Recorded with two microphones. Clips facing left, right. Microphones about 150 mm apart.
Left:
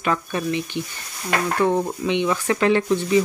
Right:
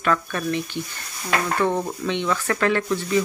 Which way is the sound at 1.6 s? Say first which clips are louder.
Left 2 dB; 15° left (ahead or behind).